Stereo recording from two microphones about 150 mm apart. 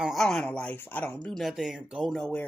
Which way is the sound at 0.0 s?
Centre (ahead or behind).